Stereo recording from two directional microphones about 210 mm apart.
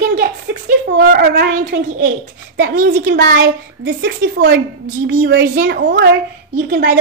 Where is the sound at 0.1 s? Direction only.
50° right (ahead or behind).